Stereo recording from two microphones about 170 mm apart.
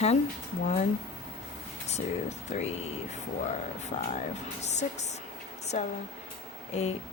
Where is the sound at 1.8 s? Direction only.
40° left (ahead or behind).